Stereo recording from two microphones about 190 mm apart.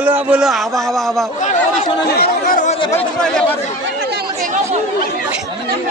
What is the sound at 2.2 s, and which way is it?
Chatter, 45° left (ahead or behind).